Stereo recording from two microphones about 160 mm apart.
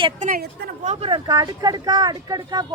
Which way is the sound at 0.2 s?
60° right (ahead or behind).